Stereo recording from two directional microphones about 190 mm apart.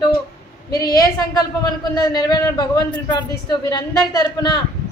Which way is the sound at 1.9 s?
20° left (ahead or behind).